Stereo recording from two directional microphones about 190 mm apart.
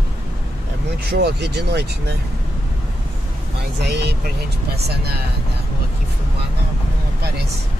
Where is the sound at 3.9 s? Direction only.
60° right (ahead or behind).